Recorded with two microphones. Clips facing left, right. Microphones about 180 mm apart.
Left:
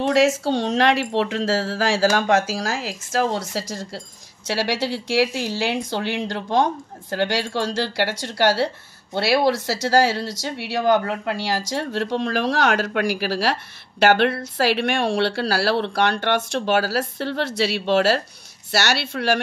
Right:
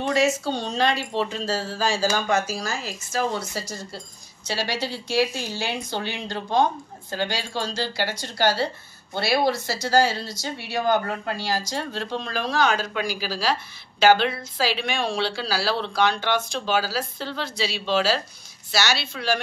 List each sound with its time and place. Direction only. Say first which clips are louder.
0.0 s speech: left 4 dB; 90° left; by 19.4 s 70° left (ahead or behind)